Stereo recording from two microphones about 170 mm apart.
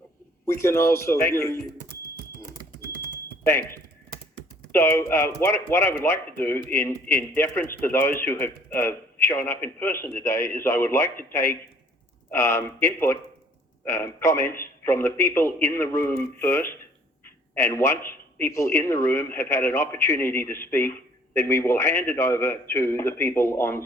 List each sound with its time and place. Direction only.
0.4 s a man's voice: 15° left (ahead or behind)
4.7 s a man's voice: 15° left (ahead or behind)
17.2 s a sound: 15° left (ahead or behind)
18.3 s a man's voice: 15° left (ahead or behind)